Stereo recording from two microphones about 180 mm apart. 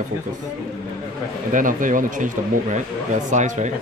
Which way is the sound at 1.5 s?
45° right (ahead or behind).